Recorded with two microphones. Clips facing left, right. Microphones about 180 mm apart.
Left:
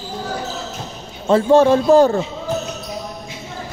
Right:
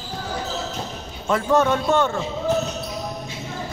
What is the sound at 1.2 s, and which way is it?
Speech, 30° left (ahead or behind).